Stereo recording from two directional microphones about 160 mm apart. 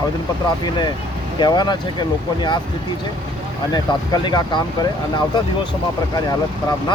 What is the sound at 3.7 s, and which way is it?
Speech, 25° left (ahead or behind).